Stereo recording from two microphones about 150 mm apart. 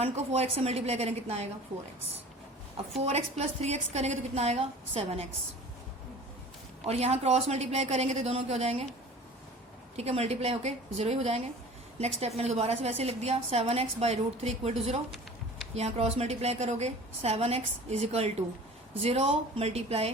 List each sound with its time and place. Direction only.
0.0 s a woman's voice: 45° right (ahead or behind)
3.0 s a woman's voice: 45° right (ahead or behind)
6.8 s a woman's voice: 45° right (ahead or behind)
10.0 s a woman's voice: 45° right (ahead or behind)